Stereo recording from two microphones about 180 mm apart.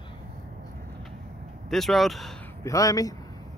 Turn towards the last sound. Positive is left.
turn(degrees=20)  # may be behind; listen again after turning